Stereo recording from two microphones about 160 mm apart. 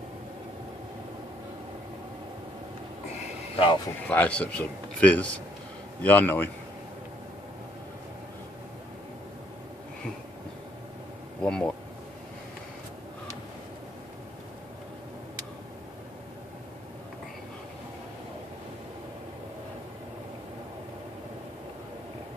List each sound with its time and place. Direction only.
3.5 s speech: 35° left (ahead or behind)
4.1 s a man's voice: 10° left (ahead or behind)
11.4 s a man's voice: 5° left (ahead or behind)